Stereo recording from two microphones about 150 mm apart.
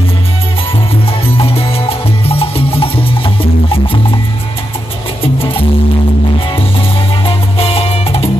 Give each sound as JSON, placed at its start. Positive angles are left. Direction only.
{"t": 1.2, "sound": "music", "side_deg": 40}
{"t": 5.2, "sound": "music", "side_deg": 40}
{"t": 7.2, "sound": "music", "side_deg": 40}